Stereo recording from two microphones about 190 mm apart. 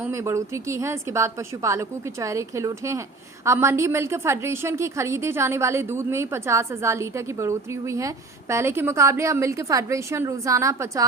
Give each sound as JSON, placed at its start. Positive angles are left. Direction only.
{"t": 0.0, "sound": "a woman's voice", "side_deg": -15}